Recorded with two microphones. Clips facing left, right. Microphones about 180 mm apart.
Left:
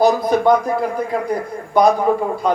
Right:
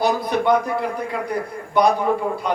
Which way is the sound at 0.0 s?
40° left (ahead or behind).